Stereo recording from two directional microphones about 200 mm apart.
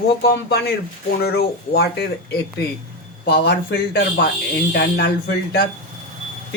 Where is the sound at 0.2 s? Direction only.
50° left (ahead or behind).